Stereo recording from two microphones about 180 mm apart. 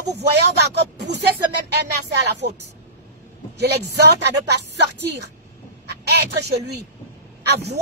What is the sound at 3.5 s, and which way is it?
Speech, 70° right (ahead or behind).